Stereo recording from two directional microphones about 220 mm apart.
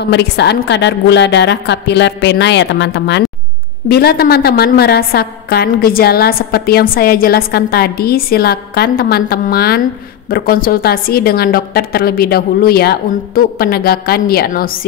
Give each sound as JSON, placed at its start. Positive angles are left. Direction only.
{"t": 0.0, "sound": "a woman's voice", "side_deg": 50}